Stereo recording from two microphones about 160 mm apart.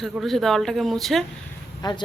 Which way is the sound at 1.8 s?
25° left (ahead or behind).